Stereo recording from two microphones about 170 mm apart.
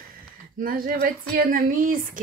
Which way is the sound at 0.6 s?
55° right (ahead or behind).